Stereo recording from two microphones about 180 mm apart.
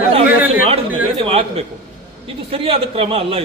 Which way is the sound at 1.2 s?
30° right (ahead or behind).